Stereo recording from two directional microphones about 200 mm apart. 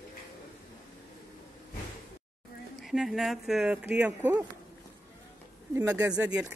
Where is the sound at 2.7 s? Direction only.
Centre (ahead or behind).